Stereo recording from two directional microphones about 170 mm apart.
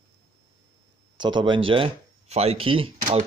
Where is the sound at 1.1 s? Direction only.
25° right (ahead or behind).